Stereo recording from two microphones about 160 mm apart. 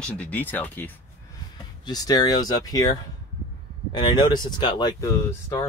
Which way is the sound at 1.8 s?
25° left (ahead or behind).